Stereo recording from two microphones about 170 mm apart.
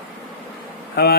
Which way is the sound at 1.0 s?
70° left (ahead or behind).